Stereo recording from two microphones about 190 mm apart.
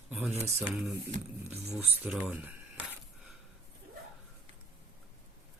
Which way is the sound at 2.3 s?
10° right (ahead or behind).